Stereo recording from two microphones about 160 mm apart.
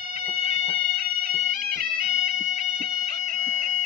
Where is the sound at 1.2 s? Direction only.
70° right (ahead or behind).